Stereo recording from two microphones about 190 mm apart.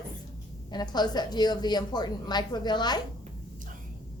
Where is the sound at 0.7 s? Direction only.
20° left (ahead or behind).